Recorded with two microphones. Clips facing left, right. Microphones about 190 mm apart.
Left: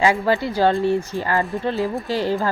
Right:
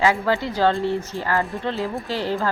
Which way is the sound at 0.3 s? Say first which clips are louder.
Left 2 dB; 10° left (ahead or behind).